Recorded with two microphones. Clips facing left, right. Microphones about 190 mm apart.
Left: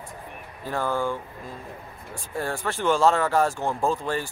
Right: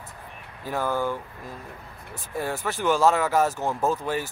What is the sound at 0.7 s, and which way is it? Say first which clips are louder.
Speech: even; 10° right (ahead or behind).